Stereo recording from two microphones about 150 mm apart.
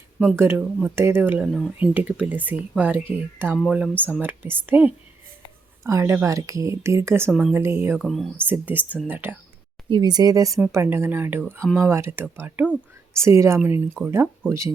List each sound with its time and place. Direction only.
0.3 s speech: 15° right (ahead or behind)
7.3 s speech: centre (ahead or behind)
7.5 s speech: 15° right (ahead or behind)
7.9 s speech: centre (ahead or behind)
8.4 s speech: 10° right (ahead or behind)
9.9 s speech: 30° right (ahead or behind)